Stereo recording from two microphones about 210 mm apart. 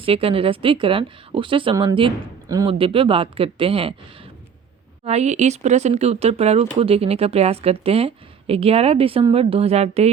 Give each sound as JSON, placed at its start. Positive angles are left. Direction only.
{"t": 0.0, "sound": "a woman's voice", "side_deg": -25}